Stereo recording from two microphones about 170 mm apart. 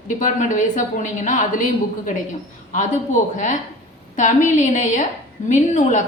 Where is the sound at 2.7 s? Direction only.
45° left (ahead or behind).